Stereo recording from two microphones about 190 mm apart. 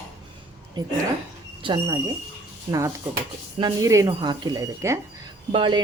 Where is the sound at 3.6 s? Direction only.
20° right (ahead or behind).